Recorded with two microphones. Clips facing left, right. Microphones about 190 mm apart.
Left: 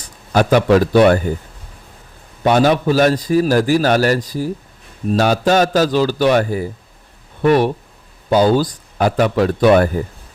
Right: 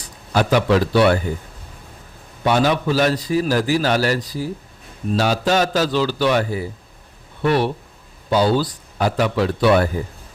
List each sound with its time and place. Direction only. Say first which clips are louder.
0.3 s a man's voice: left 4 dB; 45° left (ahead or behind)
2.4 s a man's voice: left 4 dB; 45° left (ahead or behind)